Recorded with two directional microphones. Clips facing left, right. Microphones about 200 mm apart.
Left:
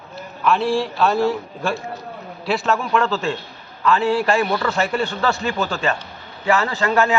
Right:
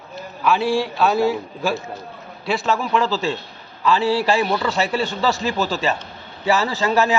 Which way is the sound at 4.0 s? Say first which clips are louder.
Left 1 dB; 35° right (ahead or behind).